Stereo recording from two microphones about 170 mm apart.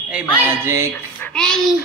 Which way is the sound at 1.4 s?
5° left (ahead or behind).